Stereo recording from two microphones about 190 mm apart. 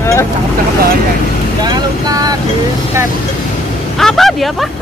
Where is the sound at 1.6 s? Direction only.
20° right (ahead or behind).